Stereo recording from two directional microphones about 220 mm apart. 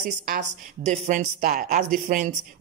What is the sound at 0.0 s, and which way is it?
Speech, 40° right (ahead or behind).